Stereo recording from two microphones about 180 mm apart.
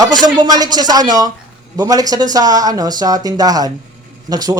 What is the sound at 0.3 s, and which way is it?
Speech, 20° right (ahead or behind).